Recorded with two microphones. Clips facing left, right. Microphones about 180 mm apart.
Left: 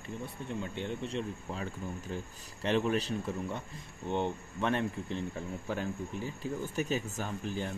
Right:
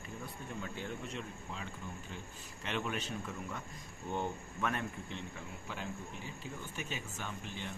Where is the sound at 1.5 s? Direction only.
40° left (ahead or behind).